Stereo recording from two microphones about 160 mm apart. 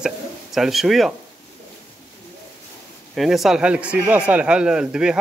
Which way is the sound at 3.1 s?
Centre (ahead or behind).